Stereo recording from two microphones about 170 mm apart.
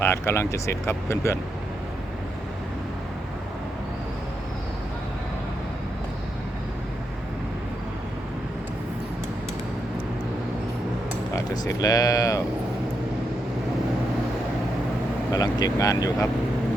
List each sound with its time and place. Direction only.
0.0 s speech: 15° left (ahead or behind)
11.3 s speech: 20° left (ahead or behind)
15.3 s speech: 20° left (ahead or behind)